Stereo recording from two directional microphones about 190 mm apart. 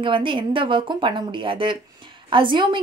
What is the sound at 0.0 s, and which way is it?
A woman's voice, 25° right (ahead or behind).